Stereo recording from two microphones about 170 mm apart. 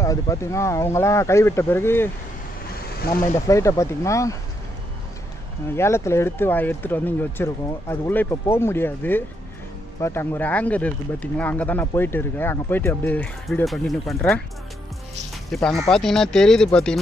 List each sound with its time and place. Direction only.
0.0 s speech: 20° left (ahead or behind)
3.4 s speech: 20° left (ahead or behind)
5.7 s speech: 15° left (ahead or behind)
15.5 s speech: centre (ahead or behind)